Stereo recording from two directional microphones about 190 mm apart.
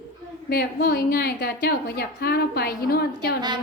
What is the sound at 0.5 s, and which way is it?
A woman's voice, 55° left (ahead or behind).